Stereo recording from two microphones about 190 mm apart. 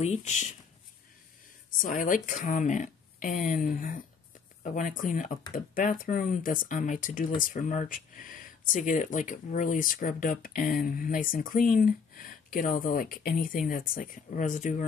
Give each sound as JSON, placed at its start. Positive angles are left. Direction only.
{"t": 0.0, "sound": "speech", "side_deg": 35}
{"t": 1.8, "sound": "speech", "side_deg": 45}